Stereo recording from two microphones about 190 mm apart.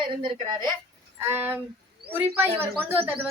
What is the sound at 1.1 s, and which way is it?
A woman's voice, 10° right (ahead or behind).